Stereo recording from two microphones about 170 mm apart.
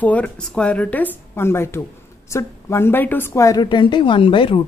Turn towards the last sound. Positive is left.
turn(degrees=30)  # may be behind; listen again after turning